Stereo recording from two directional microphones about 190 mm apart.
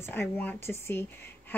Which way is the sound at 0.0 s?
10° left (ahead or behind).